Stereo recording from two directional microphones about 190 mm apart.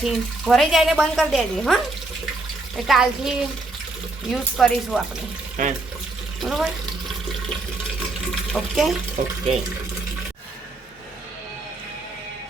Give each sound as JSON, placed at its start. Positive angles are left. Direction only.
{"t": 0.0, "sound": "speech", "side_deg": 0}
{"t": 2.8, "sound": "speech", "side_deg": 0}
{"t": 5.6, "sound": "speech", "side_deg": -40}
{"t": 6.4, "sound": "speech", "side_deg": 0}
{"t": 8.5, "sound": "speech", "side_deg": 0}
{"t": 9.2, "sound": "speech", "side_deg": -45}